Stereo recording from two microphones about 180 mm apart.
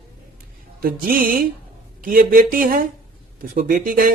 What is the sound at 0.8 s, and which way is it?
Speech, 55° right (ahead or behind).